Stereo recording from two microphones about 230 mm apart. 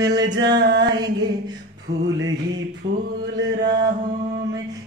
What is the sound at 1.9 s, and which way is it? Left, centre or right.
Music, right.